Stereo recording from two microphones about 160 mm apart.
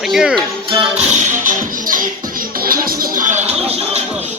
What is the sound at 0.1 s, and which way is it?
Speech, 5° right (ahead or behind).